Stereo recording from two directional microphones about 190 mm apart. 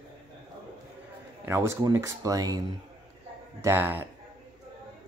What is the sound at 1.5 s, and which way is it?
Speech, 15° right (ahead or behind).